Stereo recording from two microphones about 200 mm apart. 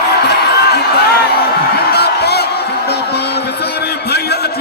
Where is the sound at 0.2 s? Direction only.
55° left (ahead or behind).